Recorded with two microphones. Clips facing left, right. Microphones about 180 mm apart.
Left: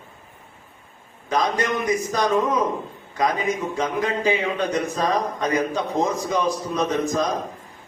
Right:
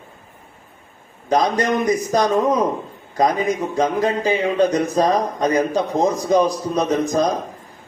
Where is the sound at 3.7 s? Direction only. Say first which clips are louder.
Right 5 dB; 35° right (ahead or behind).